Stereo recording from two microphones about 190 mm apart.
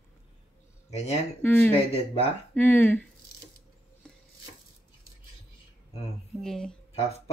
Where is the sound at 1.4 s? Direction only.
10° left (ahead or behind).